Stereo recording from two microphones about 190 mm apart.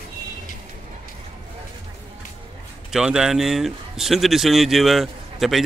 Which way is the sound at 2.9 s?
5° right (ahead or behind).